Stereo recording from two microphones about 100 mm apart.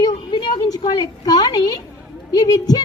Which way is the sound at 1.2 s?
40° left (ahead or behind).